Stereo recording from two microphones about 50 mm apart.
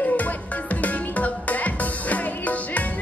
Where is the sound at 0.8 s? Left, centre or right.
Left.